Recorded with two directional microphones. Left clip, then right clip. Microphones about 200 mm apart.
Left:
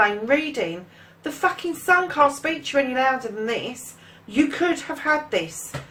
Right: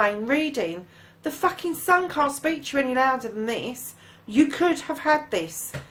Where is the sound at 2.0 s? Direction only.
40° right (ahead or behind).